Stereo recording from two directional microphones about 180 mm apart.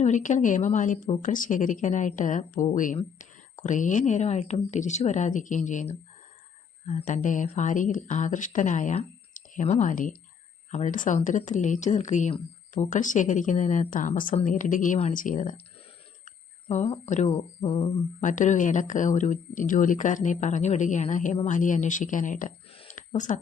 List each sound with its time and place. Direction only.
0.0 s speech: 45° left (ahead or behind)
18.2 s speech: 45° left (ahead or behind)
22.7 s a sound: 40° left (ahead or behind)